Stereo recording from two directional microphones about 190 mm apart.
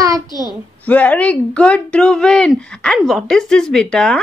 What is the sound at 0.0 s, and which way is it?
Child singing, 20° right (ahead or behind).